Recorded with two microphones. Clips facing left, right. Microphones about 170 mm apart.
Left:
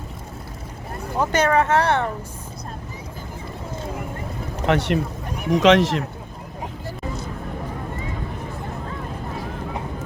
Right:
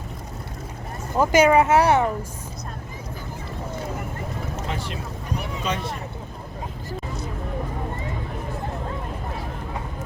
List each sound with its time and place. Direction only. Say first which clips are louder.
1.2 s speech: right 3 dB; 10° right (ahead or behind)
4.6 s speech: left 15 dB; 70° left (ahead or behind)
5.5 s speech: left 17 dB; 90° left